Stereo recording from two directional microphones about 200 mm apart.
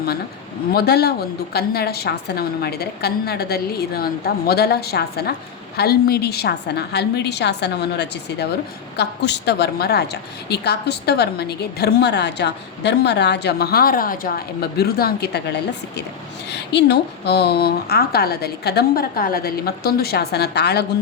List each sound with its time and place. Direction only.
0.7 s a woman's voice: 55° left (ahead or behind)